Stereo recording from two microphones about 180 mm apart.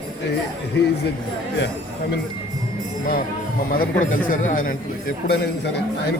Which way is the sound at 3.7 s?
50° left (ahead or behind).